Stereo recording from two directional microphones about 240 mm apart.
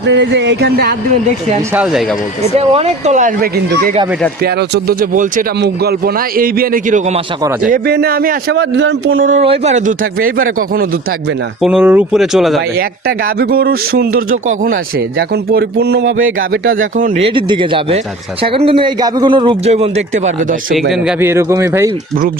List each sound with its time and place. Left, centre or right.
0.0 s speech: right
1.7 s speech: centre
2.4 s speech: right
11.6 s speech: centre
12.7 s speech: right
16.4 s speech: right
17.2 s a man's voice: centre
20.9 s a man's voice: centre